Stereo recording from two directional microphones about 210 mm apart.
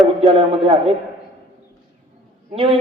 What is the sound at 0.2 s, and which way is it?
Speech, 25° right (ahead or behind).